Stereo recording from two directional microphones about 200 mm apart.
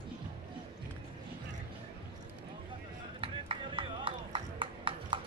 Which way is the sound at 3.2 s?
25° right (ahead or behind).